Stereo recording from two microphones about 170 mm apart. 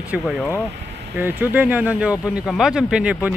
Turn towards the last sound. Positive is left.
turn(degrees=-5)  # may be behind; listen again after turning